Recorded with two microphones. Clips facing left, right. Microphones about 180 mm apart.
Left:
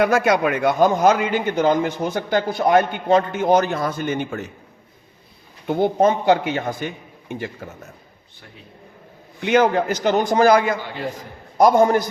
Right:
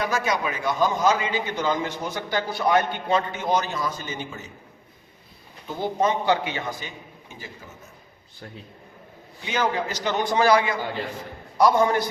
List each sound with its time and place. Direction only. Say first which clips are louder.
0.0 s a man's voice: left 8 dB; 60° left (ahead or behind)
5.6 s a man's voice: left 7 dB; 60° left (ahead or behind)
9.4 s a man's voice: left 9 dB; 60° left (ahead or behind)